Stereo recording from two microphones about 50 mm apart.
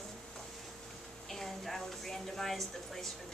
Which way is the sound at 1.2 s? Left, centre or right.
Centre.